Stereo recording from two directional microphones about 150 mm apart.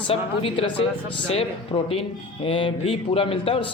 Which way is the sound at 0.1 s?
40° left (ahead or behind).